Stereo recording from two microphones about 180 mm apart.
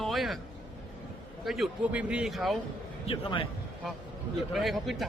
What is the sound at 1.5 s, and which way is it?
A man's voice, centre (ahead or behind).